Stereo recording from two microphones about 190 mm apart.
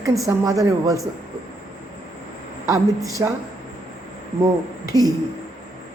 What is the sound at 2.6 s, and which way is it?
Speech, 15° right (ahead or behind).